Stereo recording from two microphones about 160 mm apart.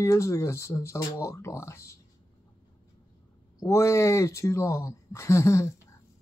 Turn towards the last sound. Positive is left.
turn(degrees=15)  # may be behind; listen again after turning